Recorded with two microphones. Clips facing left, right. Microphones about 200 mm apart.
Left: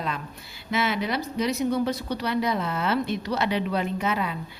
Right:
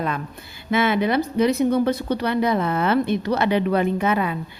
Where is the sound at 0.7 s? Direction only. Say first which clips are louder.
Right 7 dB; 55° right (ahead or behind).